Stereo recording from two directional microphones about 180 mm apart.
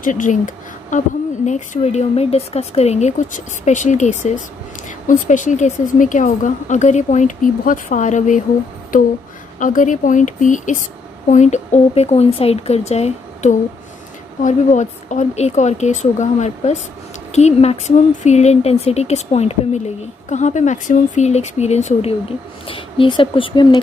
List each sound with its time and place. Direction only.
0.0 s a woman's voice: 45° left (ahead or behind); by 23.8 s 25° left (ahead or behind)